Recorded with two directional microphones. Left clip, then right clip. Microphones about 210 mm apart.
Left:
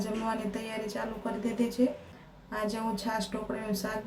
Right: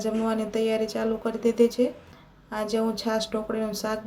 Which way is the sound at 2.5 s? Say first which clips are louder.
Right 6 dB; 25° right (ahead or behind).